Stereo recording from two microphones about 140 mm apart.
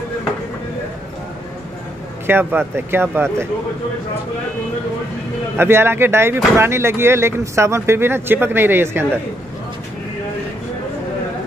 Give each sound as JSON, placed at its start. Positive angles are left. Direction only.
{"t": 2.2, "sound": "speech", "side_deg": -15}
{"t": 5.6, "sound": "speech", "side_deg": -15}